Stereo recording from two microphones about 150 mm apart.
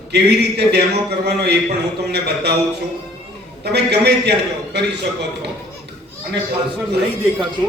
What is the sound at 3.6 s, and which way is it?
A man's voice, 90° right.